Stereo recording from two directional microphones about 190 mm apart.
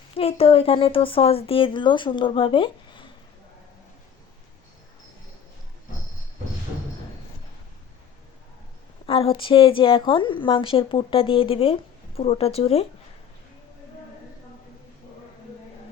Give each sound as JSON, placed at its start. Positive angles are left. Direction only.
{"t": 0.2, "sound": "a woman's voice", "side_deg": 30}
{"t": 9.0, "sound": "a woman's voice", "side_deg": 30}